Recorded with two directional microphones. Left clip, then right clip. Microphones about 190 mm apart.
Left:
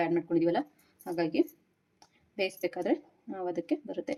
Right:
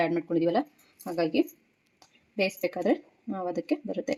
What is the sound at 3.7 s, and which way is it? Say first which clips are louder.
Speech: right 3 dB; 30° right (ahead or behind).